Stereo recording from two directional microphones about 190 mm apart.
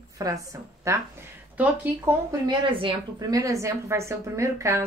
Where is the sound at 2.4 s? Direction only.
25° right (ahead or behind).